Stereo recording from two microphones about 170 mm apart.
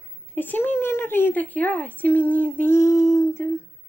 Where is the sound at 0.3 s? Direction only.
10° left (ahead or behind).